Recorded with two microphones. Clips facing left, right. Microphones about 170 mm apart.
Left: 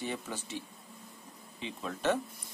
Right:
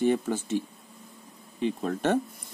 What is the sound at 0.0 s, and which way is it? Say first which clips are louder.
Speech: right 13 dB; 50° right (ahead or behind).